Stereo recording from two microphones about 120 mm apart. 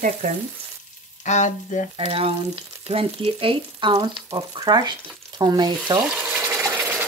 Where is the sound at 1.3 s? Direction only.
85° left.